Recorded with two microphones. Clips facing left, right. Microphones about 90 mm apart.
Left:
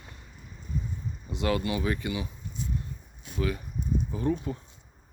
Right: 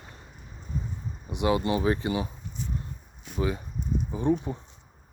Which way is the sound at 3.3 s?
25° right (ahead or behind).